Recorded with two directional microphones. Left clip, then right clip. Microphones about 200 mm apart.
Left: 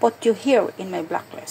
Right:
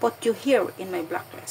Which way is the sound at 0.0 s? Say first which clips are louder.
Left 5 dB; 5° left (ahead or behind).